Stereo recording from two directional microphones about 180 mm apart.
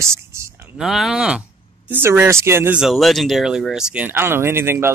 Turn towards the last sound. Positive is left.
turn(degrees=-15)  # may be behind; listen again after turning